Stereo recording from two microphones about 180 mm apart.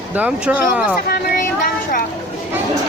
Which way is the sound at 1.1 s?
55° left (ahead or behind).